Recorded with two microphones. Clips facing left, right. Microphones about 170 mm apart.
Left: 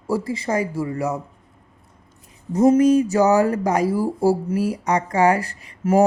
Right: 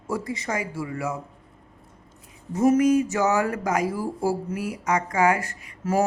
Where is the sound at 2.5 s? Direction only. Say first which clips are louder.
Left 4 dB; 35° left (ahead or behind).